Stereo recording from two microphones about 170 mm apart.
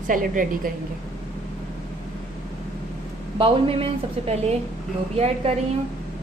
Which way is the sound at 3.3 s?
30° right (ahead or behind).